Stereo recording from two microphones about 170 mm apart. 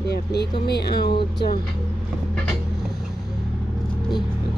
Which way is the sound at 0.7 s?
70° left (ahead or behind).